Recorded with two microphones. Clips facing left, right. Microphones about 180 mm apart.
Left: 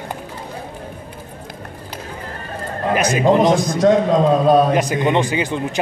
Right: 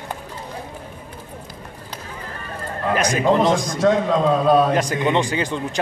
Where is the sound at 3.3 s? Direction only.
15° left (ahead or behind).